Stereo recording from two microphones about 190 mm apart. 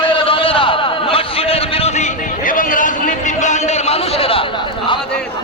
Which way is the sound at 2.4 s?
45° left (ahead or behind).